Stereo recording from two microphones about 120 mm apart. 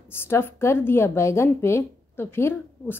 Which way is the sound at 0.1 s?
20° left (ahead or behind).